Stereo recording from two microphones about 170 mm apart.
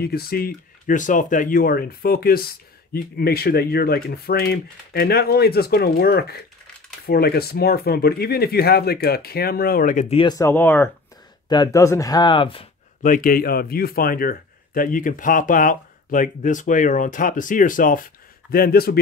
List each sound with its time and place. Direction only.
0.0 s speech: 65° left (ahead or behind)
10.1 s speech: 25° left (ahead or behind)
10.5 s speech: 10° left (ahead or behind)
11.4 s speech: 25° left (ahead or behind)
13.0 s speech: 55° left (ahead or behind)